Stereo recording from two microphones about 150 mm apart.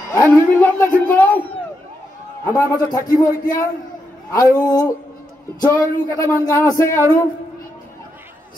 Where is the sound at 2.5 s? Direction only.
25° left (ahead or behind).